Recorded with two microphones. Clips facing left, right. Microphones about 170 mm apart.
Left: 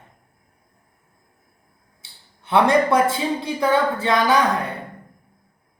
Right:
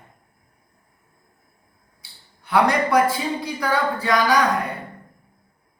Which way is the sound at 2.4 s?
25° left (ahead or behind).